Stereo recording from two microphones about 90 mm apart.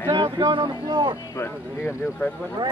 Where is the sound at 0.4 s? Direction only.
60° right (ahead or behind).